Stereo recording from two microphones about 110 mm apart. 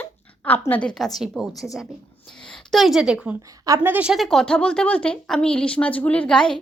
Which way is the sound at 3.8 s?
15° right (ahead or behind).